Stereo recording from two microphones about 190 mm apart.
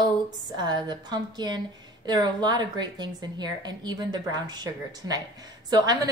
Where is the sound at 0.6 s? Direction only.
20° right (ahead or behind).